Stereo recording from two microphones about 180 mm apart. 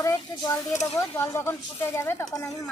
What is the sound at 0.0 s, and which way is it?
Speech, 15° left (ahead or behind).